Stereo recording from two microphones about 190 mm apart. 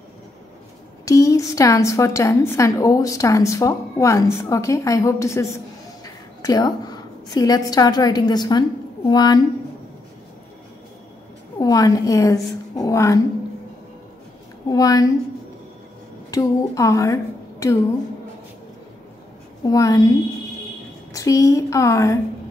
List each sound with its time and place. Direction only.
1.0 s a woman's voice: 15° left (ahead or behind)
11.5 s a woman's voice: 20° left (ahead or behind)
14.7 s a woman's voice: 20° left (ahead or behind)
16.3 s speech: 15° left (ahead or behind)
19.6 s a woman's voice: 20° left (ahead or behind)
21.1 s a woman's voice: 15° left (ahead or behind)